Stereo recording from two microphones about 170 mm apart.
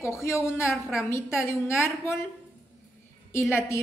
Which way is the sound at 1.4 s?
15° left (ahead or behind).